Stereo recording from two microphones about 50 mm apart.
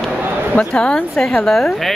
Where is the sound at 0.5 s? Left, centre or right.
Centre.